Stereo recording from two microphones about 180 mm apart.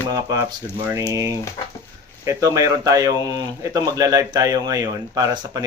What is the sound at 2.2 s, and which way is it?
A man's voice, 20° right (ahead or behind).